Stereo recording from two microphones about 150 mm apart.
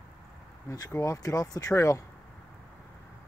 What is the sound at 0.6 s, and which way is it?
Speech, 20° left (ahead or behind).